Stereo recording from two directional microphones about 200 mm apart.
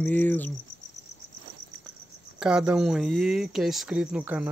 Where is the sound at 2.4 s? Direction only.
5° right (ahead or behind).